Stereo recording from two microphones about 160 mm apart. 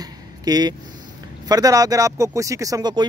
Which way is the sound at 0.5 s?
25° right (ahead or behind).